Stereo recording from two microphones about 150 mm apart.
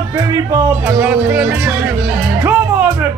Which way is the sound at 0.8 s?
10° right (ahead or behind).